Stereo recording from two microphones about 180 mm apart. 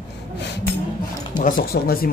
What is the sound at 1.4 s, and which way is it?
Speech, 55° left (ahead or behind).